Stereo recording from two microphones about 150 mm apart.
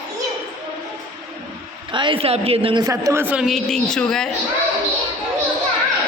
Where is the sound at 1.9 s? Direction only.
35° right (ahead or behind).